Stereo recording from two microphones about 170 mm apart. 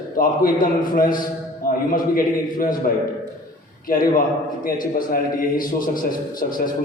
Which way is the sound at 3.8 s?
55° left (ahead or behind).